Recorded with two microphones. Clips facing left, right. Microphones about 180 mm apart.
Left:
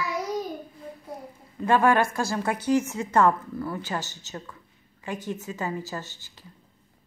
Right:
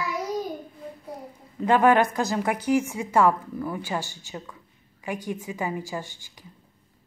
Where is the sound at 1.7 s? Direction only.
15° right (ahead or behind).